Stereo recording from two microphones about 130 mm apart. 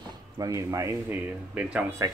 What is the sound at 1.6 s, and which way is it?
Speech, 10° right (ahead or behind).